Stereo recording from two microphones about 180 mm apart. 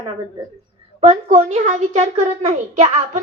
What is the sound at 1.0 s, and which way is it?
A woman's voice, 35° right (ahead or behind).